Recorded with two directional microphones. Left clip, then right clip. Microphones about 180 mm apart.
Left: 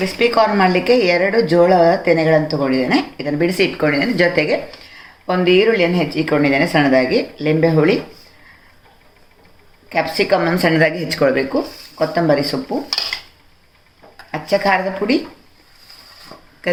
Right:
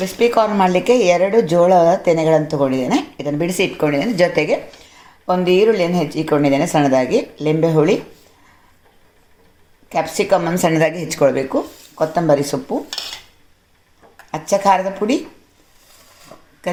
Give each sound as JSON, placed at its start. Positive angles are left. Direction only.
{"t": 0.0, "sound": "speech", "side_deg": -60}
{"t": 9.9, "sound": "speech", "side_deg": -50}
{"t": 14.5, "sound": "speech", "side_deg": -50}